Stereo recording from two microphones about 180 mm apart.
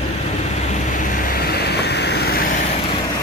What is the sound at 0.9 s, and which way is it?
Vehicle, 60° left (ahead or behind).